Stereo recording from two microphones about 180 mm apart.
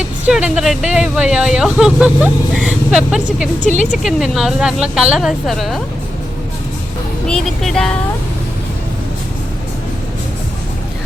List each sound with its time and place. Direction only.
0.0 s speech: 5° right (ahead or behind)
7.3 s speech: 5° left (ahead or behind)